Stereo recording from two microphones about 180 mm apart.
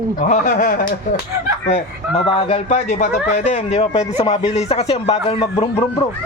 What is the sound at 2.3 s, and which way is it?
Speech, 35° left (ahead or behind).